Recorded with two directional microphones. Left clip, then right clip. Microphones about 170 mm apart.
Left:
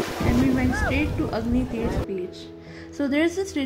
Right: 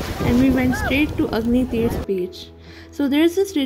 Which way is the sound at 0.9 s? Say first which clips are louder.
Right 6 dB; 35° right (ahead or behind).